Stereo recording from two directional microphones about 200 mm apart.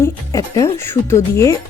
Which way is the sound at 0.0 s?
15° left (ahead or behind).